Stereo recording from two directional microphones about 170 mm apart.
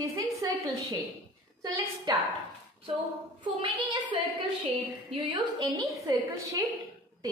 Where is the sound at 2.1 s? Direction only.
20° right (ahead or behind).